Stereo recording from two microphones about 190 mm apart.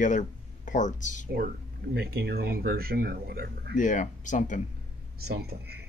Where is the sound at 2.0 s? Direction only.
55° right (ahead or behind).